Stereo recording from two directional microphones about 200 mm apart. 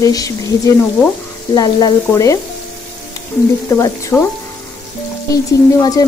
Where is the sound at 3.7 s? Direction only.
15° left (ahead or behind).